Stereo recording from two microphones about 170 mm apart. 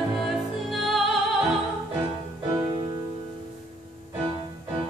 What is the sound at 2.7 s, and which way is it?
Music, 35° right (ahead or behind).